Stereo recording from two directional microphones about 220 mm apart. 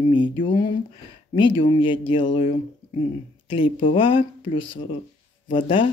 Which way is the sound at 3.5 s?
25° left (ahead or behind).